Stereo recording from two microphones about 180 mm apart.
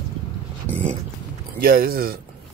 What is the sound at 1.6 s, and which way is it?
Speech, 55° right (ahead or behind).